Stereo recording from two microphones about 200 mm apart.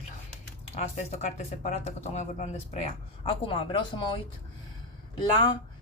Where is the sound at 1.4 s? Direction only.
35° left (ahead or behind).